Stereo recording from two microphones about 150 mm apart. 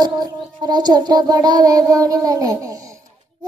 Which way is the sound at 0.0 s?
30° right (ahead or behind).